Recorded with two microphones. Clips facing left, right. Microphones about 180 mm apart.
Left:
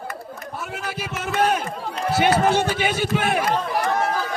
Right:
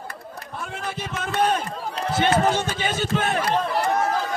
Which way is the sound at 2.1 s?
10° left (ahead or behind).